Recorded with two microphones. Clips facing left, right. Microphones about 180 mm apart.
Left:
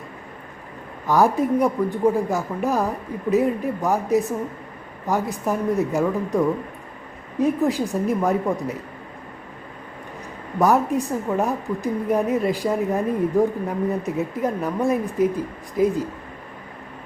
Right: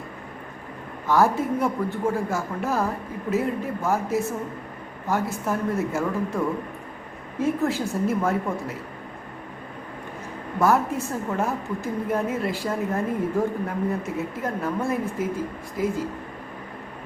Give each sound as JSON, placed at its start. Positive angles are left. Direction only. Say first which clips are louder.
{"t": 1.0, "sound": "speech", "louder": "left 2 dB", "side_deg": 15}
{"t": 10.6, "sound": "speech", "louder": "left 3 dB", "side_deg": 15}